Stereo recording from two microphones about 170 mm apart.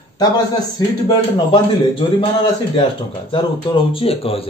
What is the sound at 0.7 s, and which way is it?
Speech, 25° left (ahead or behind).